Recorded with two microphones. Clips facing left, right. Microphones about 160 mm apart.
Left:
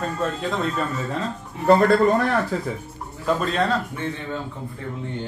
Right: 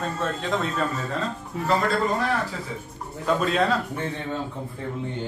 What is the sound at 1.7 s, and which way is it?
Speech, 55° left (ahead or behind).